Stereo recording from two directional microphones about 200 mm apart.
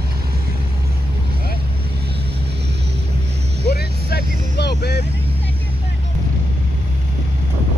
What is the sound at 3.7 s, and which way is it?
Vehicle, 50° left (ahead or behind).